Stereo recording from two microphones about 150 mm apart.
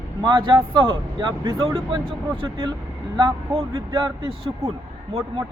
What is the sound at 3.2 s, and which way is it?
A man's voice, 30° right (ahead or behind).